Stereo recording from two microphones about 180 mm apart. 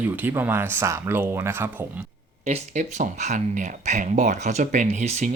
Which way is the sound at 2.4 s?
40° right (ahead or behind).